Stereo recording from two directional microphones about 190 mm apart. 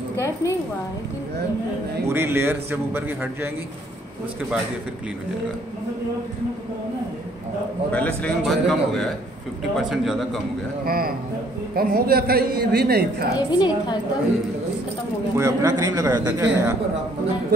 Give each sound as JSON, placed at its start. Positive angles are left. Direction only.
{"t": 0.1, "sound": "a woman's voice", "side_deg": 15}
{"t": 2.0, "sound": "a man's voice", "side_deg": -10}
{"t": 7.9, "sound": "a woman's voice", "side_deg": 5}
{"t": 10.9, "sound": "a woman's voice", "side_deg": -50}
{"t": 13.5, "sound": "a woman's voice", "side_deg": 25}
{"t": 15.3, "sound": "a man's voice", "side_deg": -15}